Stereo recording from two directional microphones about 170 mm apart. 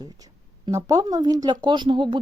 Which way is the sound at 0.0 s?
20° right (ahead or behind).